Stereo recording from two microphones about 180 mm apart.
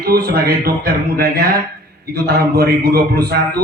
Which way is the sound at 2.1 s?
60° right (ahead or behind).